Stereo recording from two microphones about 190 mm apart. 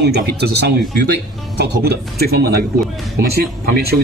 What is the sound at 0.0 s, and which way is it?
Speech, 60° right (ahead or behind).